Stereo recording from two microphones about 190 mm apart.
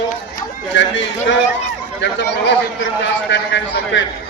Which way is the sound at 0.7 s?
70° left (ahead or behind).